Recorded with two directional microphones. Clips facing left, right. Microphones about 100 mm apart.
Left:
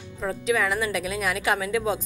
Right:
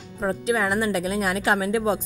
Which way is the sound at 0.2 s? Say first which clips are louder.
Right 1 dB; 35° right (ahead or behind).